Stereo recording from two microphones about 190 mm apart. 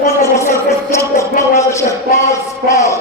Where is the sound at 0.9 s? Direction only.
15° left (ahead or behind).